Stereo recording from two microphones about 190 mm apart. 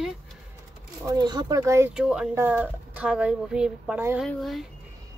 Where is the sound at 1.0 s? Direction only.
20° right (ahead or behind).